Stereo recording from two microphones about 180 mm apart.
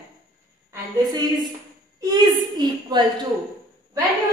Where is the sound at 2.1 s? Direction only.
25° right (ahead or behind).